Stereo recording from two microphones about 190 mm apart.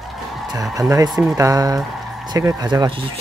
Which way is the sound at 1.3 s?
20° right (ahead or behind).